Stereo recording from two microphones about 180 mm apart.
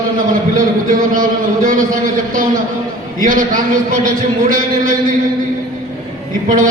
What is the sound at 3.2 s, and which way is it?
A man's voice, 50° right (ahead or behind).